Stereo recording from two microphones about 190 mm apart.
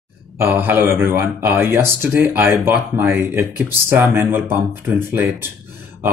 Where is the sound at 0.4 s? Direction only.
10° right (ahead or behind).